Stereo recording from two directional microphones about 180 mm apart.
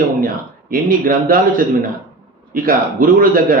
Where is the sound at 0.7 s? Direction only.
50° right (ahead or behind).